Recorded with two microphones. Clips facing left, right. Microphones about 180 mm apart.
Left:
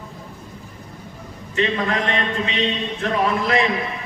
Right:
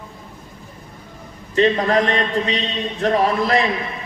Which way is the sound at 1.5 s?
35° right (ahead or behind).